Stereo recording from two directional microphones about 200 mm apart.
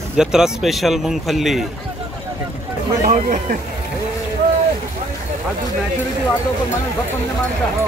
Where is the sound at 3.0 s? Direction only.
40° right (ahead or behind).